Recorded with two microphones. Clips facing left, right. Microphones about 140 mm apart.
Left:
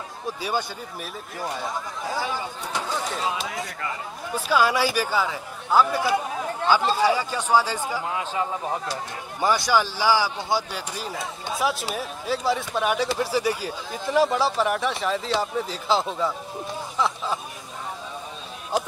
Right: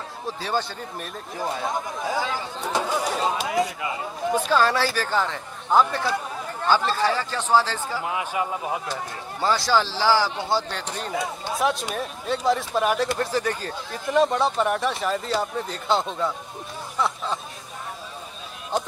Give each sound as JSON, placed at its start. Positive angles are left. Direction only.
{"t": 0.4, "sound": "a man's voice", "side_deg": 10}
{"t": 2.9, "sound": "speech", "side_deg": 0}
{"t": 4.5, "sound": "a man's voice", "side_deg": 10}
{"t": 8.0, "sound": "speech", "side_deg": -15}
{"t": 9.4, "sound": "a man's voice", "side_deg": 15}